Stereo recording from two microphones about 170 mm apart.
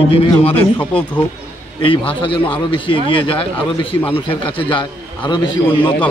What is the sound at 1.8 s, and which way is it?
A man's voice, 30° left (ahead or behind).